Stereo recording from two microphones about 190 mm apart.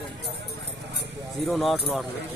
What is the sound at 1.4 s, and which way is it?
Speech, centre (ahead or behind).